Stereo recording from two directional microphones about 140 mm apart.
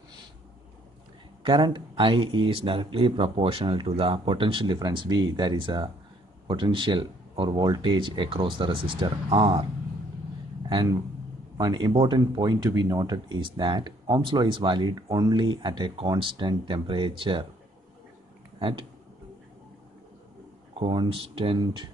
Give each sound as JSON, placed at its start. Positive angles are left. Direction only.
{"t": 1.4, "sound": "speech", "side_deg": -35}
{"t": 11.5, "sound": "speech", "side_deg": -30}
{"t": 18.6, "sound": "speech", "side_deg": -40}
{"t": 20.9, "sound": "speech", "side_deg": -40}